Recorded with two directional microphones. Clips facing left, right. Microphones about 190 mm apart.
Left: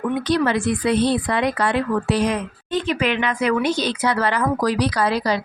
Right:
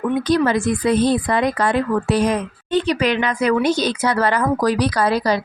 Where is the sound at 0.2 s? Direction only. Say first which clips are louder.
Right 2 dB; 45° right (ahead or behind).